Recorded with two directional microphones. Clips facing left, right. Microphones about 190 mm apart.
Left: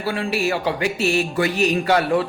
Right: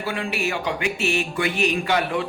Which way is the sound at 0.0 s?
35° left (ahead or behind).